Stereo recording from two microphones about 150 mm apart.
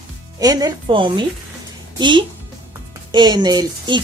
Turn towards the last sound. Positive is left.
turn(degrees=-30)  # may be behind; listen again after turning